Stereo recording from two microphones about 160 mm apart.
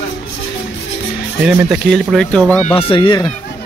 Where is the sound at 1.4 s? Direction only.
5° right (ahead or behind).